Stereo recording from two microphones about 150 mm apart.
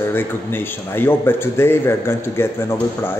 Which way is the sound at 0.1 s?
15° left (ahead or behind).